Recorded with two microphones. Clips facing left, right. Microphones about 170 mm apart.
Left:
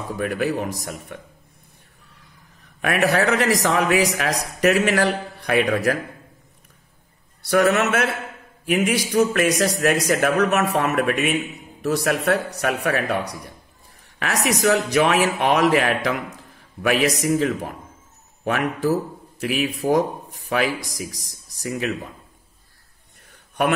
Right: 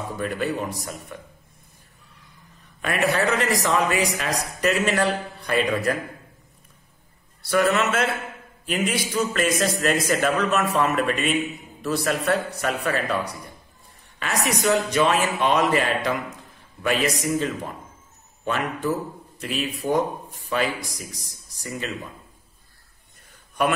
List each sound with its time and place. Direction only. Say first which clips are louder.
0.2 s a man's voice: left 3 dB; 65° left (ahead or behind)
2.8 s a man's voice: left 3 dB; 70° left (ahead or behind)
7.4 s a man's voice: left 3 dB; 60° left (ahead or behind)
14.6 s a man's voice: left 2 dB; 70° left (ahead or behind)
18.4 s a man's voice: left 4 dB; 75° left (ahead or behind)
23.3 s a sound: left 1 dB; 65° left (ahead or behind)